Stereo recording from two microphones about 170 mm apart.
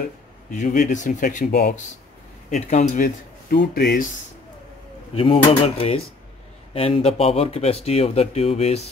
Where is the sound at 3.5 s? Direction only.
65° left (ahead or behind).